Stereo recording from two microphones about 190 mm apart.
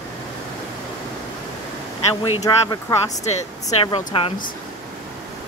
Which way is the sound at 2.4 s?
20° left (ahead or behind).